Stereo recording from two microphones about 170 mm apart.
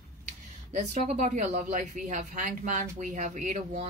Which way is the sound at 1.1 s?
45° right (ahead or behind).